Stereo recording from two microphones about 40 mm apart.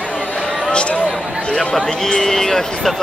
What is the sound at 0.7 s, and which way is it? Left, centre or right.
Music, left.